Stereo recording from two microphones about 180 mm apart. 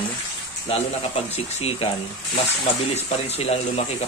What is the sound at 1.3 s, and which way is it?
A man's voice, 35° left (ahead or behind).